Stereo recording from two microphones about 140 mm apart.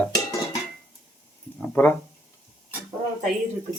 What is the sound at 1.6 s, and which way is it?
Speech, 10° left (ahead or behind).